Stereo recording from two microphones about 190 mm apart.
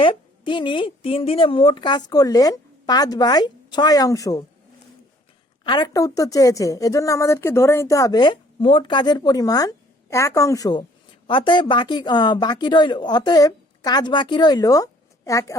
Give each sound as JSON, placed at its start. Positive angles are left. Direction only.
{"t": 0.0, "sound": "a woman's voice", "side_deg": 25}
{"t": 5.6, "sound": "a woman's voice", "side_deg": 20}